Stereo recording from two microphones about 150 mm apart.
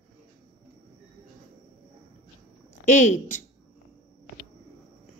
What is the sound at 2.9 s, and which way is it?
Speech, 55° left (ahead or behind).